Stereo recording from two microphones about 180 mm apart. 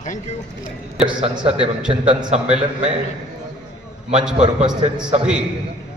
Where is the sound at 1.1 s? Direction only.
25° right (ahead or behind).